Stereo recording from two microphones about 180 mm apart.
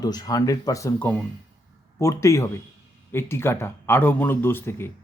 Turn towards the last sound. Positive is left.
turn(degrees=15)  # may be behind; listen again after turning